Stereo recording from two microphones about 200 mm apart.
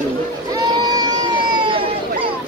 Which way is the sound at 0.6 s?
20° right (ahead or behind).